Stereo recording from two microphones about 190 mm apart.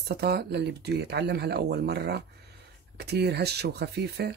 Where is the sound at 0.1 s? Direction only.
60° right (ahead or behind).